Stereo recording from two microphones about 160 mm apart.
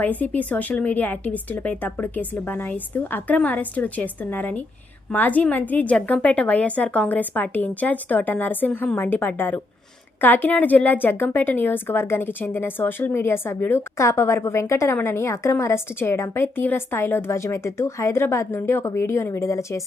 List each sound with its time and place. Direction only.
0.0 s a woman's voice: 10° left (ahead or behind)